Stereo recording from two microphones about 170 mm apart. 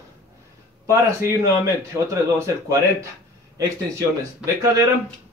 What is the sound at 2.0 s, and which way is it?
A man's voice, 15° right (ahead or behind).